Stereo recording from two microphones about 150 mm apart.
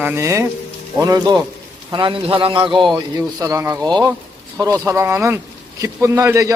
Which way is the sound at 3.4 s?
20° right (ahead or behind).